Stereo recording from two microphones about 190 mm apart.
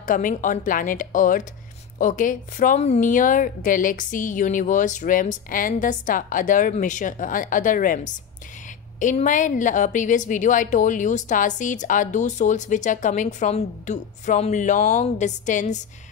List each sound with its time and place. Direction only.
0.0 s a woman's voice: 45° left (ahead or behind)